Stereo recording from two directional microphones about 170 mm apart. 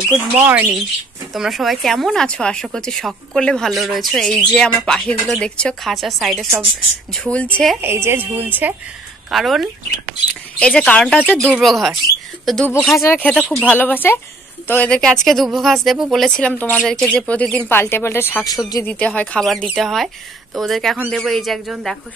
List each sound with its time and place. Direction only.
0.4 s speech: 10° right (ahead or behind)
7.8 s speech: 15° right (ahead or behind); by 18.9 s 20° left (ahead or behind)
18.9 s speech: 10° left (ahead or behind)